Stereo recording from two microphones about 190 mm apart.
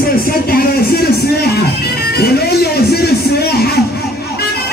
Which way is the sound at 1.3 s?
55° left (ahead or behind).